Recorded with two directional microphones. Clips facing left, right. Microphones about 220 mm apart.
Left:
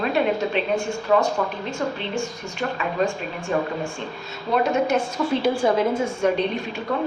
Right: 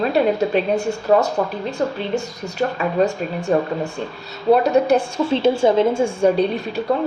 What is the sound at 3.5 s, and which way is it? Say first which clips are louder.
A woman's voice: right 4 dB; 40° right (ahead or behind).